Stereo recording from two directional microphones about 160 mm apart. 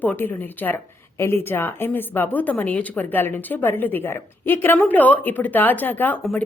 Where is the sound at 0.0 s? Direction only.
10° left (ahead or behind).